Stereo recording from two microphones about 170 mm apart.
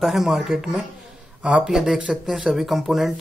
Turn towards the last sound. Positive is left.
turn(degrees=0)  # may be behind; listen again after turning